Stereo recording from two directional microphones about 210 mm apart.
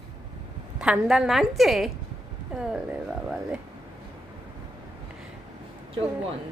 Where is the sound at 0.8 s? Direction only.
5° right (ahead or behind).